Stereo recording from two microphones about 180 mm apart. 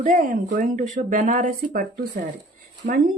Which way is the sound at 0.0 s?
45° right (ahead or behind).